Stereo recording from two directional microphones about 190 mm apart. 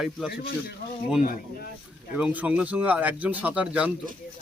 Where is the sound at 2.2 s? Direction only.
5° right (ahead or behind).